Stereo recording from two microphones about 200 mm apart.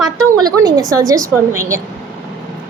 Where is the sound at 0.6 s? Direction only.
20° right (ahead or behind).